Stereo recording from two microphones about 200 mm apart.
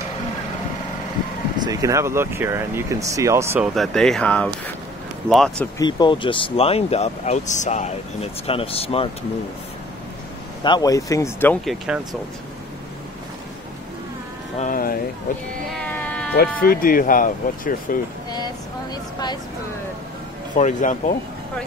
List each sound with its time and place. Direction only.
1.7 s speech: 15° right (ahead or behind)
3.7 s speech: centre (ahead or behind)
5.8 s speech: 20° left (ahead or behind)
10.6 s speech: 20° left (ahead or behind)
11.6 s speech: centre (ahead or behind)
14.6 s a sound: 45° left (ahead or behind)
15.7 s cat: 5° left (ahead or behind)
16.3 s speech: 45° left (ahead or behind)
20.5 s speech: 40° left (ahead or behind)